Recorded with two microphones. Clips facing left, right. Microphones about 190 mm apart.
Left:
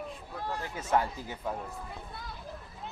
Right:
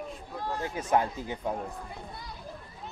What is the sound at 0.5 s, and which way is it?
Speech, 20° right (ahead or behind).